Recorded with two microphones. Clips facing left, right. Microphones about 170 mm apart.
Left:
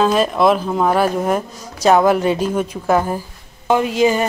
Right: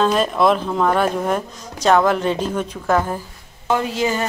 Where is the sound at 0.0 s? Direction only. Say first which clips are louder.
Left 2 dB; 5° left (ahead or behind).